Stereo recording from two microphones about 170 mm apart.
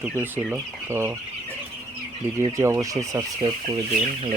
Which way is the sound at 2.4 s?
15° right (ahead or behind).